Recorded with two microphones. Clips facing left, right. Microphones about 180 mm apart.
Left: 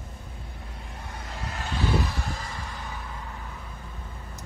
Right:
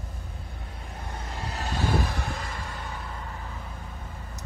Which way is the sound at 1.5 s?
40° right (ahead or behind).